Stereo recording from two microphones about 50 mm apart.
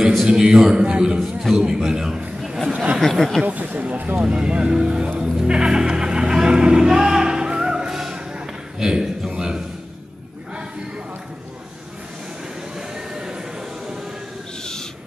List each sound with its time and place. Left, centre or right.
0.0 s a man's voice: centre
2.7 s speech: right
3.0 s speech: centre
3.4 s speech: right
4.2 s speech: right
5.2 s music: centre
8.7 s speech: centre
12.7 s a sound: centre
14.6 s wild animals: centre